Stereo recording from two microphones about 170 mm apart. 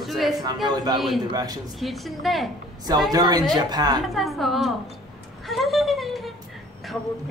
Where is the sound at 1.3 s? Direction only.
25° right (ahead or behind).